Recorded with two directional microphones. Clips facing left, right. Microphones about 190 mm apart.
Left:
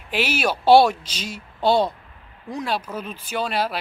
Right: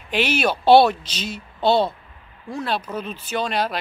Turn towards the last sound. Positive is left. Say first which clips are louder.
# right 1 dB
turn(degrees=5)  # may be behind; listen again after turning